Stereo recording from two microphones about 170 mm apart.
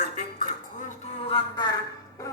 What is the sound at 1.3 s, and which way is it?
Speech, 30° left (ahead or behind).